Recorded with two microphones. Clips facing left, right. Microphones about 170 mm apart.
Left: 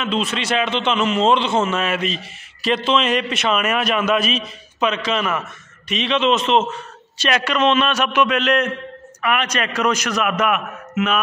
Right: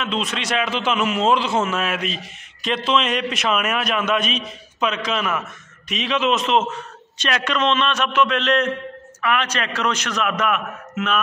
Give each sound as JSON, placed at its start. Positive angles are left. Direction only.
{"t": 0.0, "sound": "a man's voice", "side_deg": 0}